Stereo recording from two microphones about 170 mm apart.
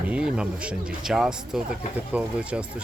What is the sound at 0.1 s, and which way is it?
Speech, 5° right (ahead or behind).